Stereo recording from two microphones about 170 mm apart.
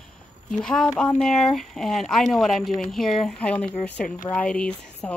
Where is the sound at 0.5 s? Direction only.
5° left (ahead or behind).